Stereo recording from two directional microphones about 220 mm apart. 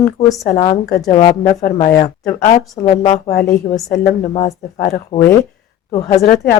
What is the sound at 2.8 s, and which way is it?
Speech, 25° left (ahead or behind).